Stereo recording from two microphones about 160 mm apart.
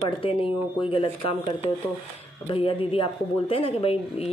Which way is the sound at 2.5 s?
35° left (ahead or behind).